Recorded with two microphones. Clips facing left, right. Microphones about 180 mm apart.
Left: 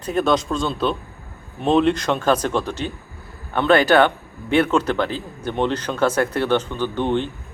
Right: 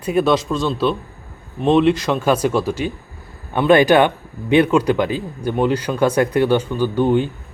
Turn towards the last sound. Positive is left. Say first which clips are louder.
# right 5 dB
turn(degrees=-10)  # may be behind; listen again after turning